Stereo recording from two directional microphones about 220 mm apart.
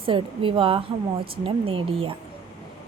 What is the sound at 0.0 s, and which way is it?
Speech, 25° right (ahead or behind).